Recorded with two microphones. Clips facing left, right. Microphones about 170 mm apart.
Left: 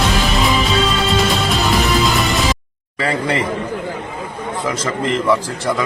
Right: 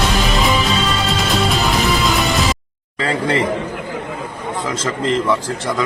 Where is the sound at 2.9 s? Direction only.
15° left (ahead or behind).